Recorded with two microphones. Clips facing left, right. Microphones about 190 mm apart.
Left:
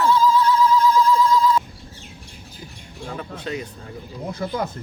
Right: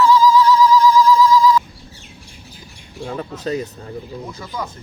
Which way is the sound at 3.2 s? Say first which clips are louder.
Right 6 dB; 35° right (ahead or behind).